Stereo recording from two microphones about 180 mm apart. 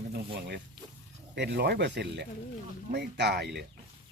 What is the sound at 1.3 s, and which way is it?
Speech, 70° right (ahead or behind).